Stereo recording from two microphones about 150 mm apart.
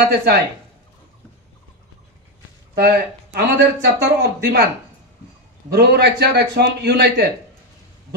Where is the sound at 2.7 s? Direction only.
90° right.